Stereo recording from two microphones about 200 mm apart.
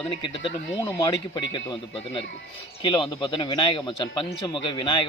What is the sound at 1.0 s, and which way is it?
Speech, 15° left (ahead or behind).